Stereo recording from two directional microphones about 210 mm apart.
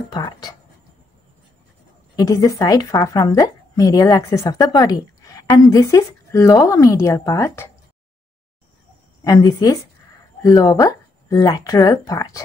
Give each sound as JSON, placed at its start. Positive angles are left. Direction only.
{"t": 0.1, "sound": "writing", "side_deg": 20}
{"t": 2.1, "sound": "a woman's voice", "side_deg": 15}
{"t": 9.2, "sound": "a woman's voice", "side_deg": 20}